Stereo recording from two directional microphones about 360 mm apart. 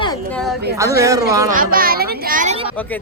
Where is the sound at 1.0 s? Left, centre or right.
Centre.